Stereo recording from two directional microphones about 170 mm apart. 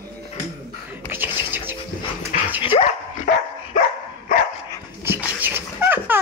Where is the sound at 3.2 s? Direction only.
55° left (ahead or behind).